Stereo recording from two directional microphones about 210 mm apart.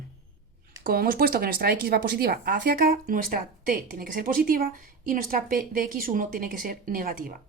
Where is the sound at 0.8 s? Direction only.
45° right (ahead or behind).